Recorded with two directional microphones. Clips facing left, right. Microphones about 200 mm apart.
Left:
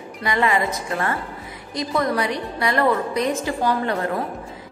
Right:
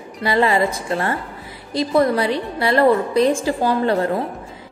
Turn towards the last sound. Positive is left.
turn(degrees=-30)  # may be behind; listen again after turning